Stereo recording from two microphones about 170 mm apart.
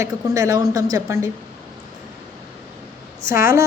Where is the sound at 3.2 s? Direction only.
15° right (ahead or behind).